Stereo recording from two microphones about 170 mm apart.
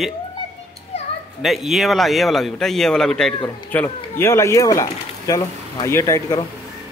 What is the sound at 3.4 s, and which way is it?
Speech, 25° left (ahead or behind).